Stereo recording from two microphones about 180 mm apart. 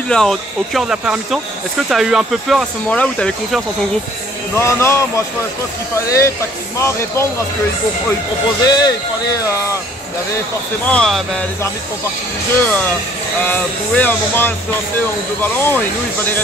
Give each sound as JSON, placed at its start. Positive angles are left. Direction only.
{"t": 0.1, "sound": "speech", "side_deg": 0}
{"t": 8.6, "sound": "speech", "side_deg": 25}
{"t": 10.9, "sound": "speech", "side_deg": 5}
{"t": 12.6, "sound": "speech", "side_deg": 10}